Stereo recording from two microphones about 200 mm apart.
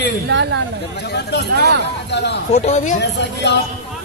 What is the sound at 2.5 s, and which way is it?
Speech, 35° left (ahead or behind).